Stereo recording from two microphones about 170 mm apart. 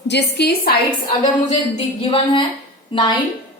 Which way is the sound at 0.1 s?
80° left.